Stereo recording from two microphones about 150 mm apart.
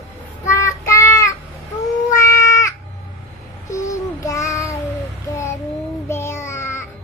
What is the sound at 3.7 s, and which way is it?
Child singing, 20° left (ahead or behind).